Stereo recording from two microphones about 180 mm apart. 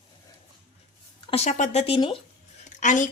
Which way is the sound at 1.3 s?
35° left (ahead or behind).